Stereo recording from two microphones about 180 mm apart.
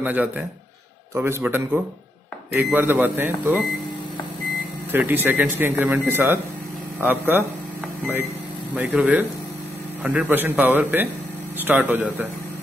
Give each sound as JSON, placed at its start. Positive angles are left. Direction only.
{"t": 0.0, "sound": "speech", "side_deg": -10}
{"t": 4.9, "sound": "speech", "side_deg": -10}
{"t": 8.7, "sound": "speech", "side_deg": -10}